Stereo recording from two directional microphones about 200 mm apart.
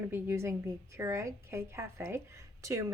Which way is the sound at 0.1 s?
10° right (ahead or behind).